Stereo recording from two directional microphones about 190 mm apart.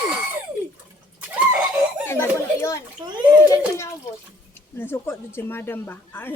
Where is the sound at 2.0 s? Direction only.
10° left (ahead or behind).